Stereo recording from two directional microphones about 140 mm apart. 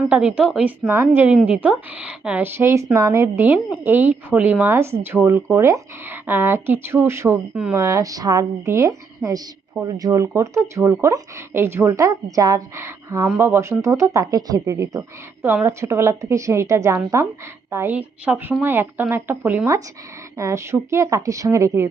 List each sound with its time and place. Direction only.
0.1 s speech: 10° right (ahead or behind)
7.5 s speech: 10° right (ahead or behind)
7.8 s speech: 20° right (ahead or behind)